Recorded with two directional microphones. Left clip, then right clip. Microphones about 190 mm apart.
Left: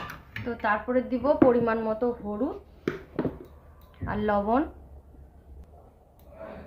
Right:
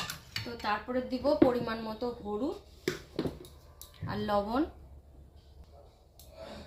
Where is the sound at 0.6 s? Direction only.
40° left (ahead or behind).